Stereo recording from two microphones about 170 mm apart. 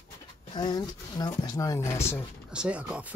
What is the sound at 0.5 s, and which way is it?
Speech, 25° left (ahead or behind).